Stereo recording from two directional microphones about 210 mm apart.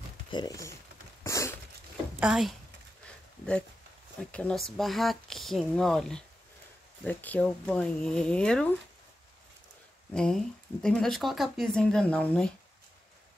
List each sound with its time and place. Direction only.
0.3 s speech: 20° left (ahead or behind)
1.2 s a sound: 15° left (ahead or behind)
2.1 s speech: 5° right (ahead or behind)
4.2 s speech: 5° left (ahead or behind)
10.1 s speech: 5° left (ahead or behind)